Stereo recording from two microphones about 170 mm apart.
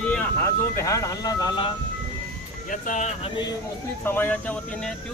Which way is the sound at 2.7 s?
50° left (ahead or behind).